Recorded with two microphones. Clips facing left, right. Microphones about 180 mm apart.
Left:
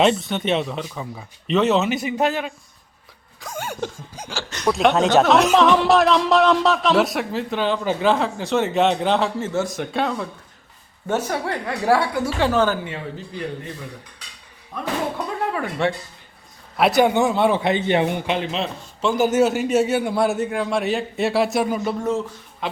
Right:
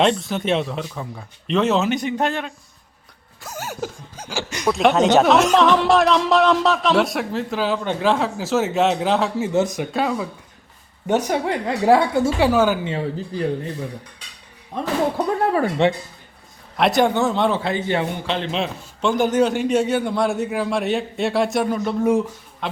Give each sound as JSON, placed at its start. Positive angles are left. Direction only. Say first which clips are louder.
{"t": 0.0, "sound": "speech", "louder": "even", "side_deg": 0}
{"t": 3.4, "sound": "a sound", "louder": "left 1 dB", "side_deg": -5}
{"t": 4.3, "sound": "speech", "louder": "right 1 dB", "side_deg": -10}
{"t": 4.7, "sound": "speech", "louder": "right 1 dB", "side_deg": 0}
{"t": 9.5, "sound": "speech", "louder": "right 4 dB", "side_deg": -20}
{"t": 9.8, "sound": "speech", "louder": "right 1 dB", "side_deg": -5}
{"t": 11.0, "sound": "a woman's voice", "louder": "right 3 dB", "side_deg": -15}
{"t": 12.4, "sound": "speech", "louder": "even", "side_deg": -10}
{"t": 14.7, "sound": "a woman's voice", "louder": "right 4 dB", "side_deg": -25}
{"t": 15.4, "sound": "a sound", "louder": "right 5 dB", "side_deg": -40}
{"t": 16.7, "sound": "a man's voice", "louder": "left 1 dB", "side_deg": 5}
{"t": 18.5, "sound": "a man's voice", "louder": "right 1 dB", "side_deg": 0}